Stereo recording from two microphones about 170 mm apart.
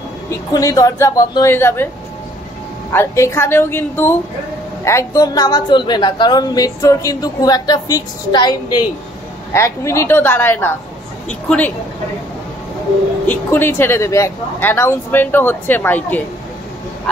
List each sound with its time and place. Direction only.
0.3 s a woman's voice: 20° left (ahead or behind)
2.9 s a woman's voice: 15° left (ahead or behind)
13.3 s speech: 10° left (ahead or behind)